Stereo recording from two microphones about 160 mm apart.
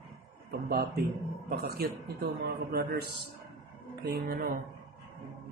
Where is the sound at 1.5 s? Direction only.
75° right (ahead or behind).